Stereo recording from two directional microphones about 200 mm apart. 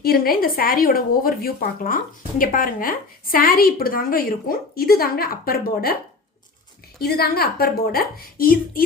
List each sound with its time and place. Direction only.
0.0 s a woman's voice: 50° left (ahead or behind)
7.0 s a woman's voice: 50° left (ahead or behind)